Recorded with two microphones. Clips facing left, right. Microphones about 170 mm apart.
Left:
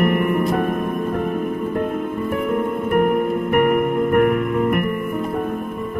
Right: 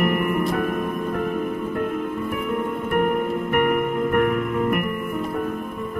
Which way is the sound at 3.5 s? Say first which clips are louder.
Left 4 dB; 35° left (ahead or behind).